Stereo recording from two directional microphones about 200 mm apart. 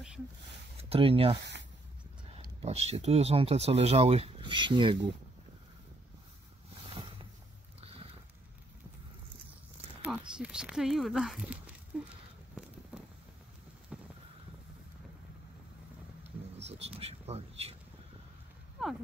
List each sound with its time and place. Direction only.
0.7 s speech: 30° right (ahead or behind)
1.4 s a sound: 60° right (ahead or behind)
2.3 s speech: 30° right (ahead or behind)
6.9 s boat: 25° right (ahead or behind)
7.8 s a sound: 30° right (ahead or behind)
10.0 s speech: 5° right (ahead or behind)
13.9 s vehicle: 5° right (ahead or behind)
16.3 s vehicle: 30° right (ahead or behind)
16.8 s a sound: 30° right (ahead or behind)